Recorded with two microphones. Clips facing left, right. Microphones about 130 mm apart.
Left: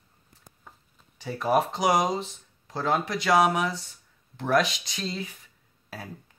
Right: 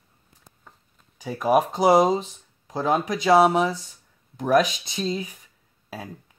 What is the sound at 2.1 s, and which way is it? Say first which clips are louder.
Speech: right 4 dB; 15° right (ahead or behind).